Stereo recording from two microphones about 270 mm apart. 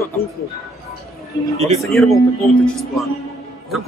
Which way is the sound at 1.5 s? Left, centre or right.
Right.